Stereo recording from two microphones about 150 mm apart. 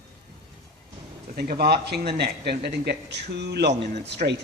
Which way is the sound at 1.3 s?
90° right.